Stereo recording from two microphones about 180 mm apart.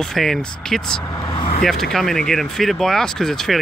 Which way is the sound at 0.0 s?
Centre (ahead or behind).